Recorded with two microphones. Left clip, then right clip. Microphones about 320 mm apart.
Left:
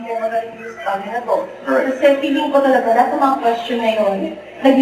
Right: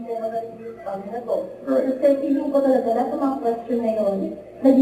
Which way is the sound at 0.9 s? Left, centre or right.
Centre.